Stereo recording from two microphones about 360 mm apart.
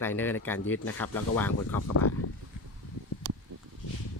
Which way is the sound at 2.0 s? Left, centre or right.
Left.